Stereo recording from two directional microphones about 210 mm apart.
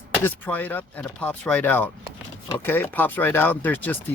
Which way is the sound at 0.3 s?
10° left (ahead or behind).